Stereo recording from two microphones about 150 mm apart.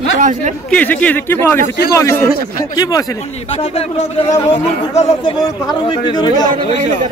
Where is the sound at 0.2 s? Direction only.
55° right (ahead or behind).